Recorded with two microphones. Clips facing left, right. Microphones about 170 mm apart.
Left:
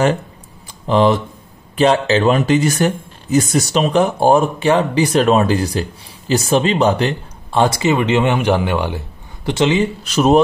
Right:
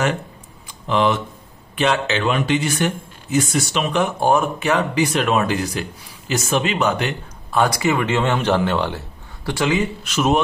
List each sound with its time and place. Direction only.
0.7 s speech: 35° left (ahead or behind)